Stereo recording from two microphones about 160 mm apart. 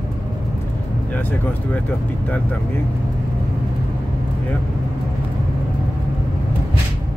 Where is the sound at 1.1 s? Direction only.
10° left (ahead or behind).